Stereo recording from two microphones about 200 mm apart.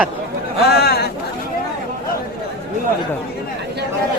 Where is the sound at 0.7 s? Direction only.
50° left (ahead or behind).